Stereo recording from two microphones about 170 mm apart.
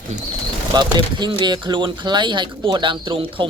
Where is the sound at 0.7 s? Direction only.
25° right (ahead or behind).